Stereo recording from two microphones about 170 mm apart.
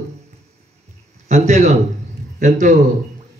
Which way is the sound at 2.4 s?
45° right (ahead or behind).